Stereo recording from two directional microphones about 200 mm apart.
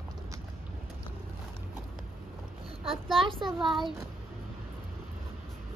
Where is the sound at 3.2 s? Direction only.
25° right (ahead or behind).